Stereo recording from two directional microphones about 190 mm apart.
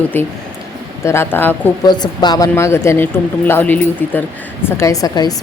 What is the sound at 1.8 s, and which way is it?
Speech, 20° left (ahead or behind).